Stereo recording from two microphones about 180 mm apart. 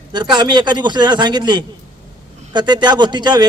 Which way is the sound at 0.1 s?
25° right (ahead or behind).